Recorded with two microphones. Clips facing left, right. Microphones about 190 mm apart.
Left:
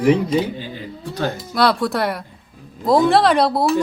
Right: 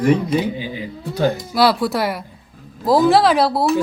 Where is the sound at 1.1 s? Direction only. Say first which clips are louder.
Right 5 dB; 5° right (ahead or behind).